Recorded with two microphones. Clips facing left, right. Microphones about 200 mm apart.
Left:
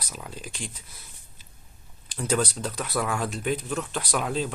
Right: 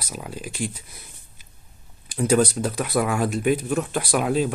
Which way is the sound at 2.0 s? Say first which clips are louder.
Right 7 dB; 10° right (ahead or behind).